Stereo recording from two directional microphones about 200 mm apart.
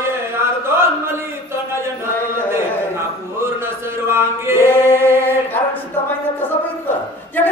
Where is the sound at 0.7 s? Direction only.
10° right (ahead or behind).